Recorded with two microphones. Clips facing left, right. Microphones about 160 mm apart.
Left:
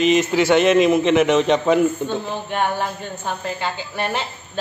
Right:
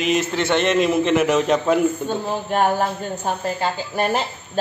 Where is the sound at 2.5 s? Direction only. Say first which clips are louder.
Right 4 dB; 40° right (ahead or behind).